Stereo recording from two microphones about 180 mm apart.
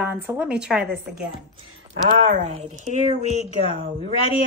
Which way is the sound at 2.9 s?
40° left (ahead or behind).